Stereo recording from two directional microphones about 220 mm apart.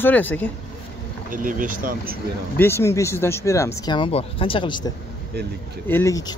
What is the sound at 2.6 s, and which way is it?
Speech, 10° left (ahead or behind).